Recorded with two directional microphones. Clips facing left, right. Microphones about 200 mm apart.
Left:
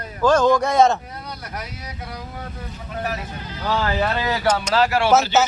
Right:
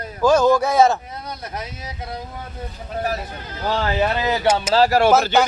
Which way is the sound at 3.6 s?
20° right (ahead or behind).